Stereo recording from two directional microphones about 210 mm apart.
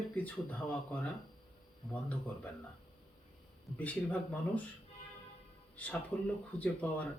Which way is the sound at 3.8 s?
5° left (ahead or behind).